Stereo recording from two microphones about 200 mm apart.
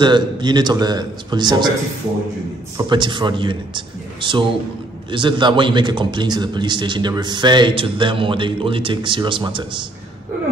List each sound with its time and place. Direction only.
0.0 s a man's voice: 20° right (ahead or behind)
2.8 s a man's voice: 25° right (ahead or behind)